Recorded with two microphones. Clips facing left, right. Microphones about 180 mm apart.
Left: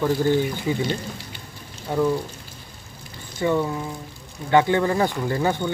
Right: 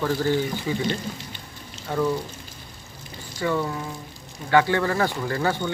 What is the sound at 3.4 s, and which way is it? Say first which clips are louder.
Speech: left 3 dB; 20° left (ahead or behind).